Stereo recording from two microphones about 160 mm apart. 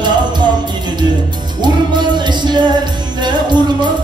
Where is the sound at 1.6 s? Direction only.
25° right (ahead or behind).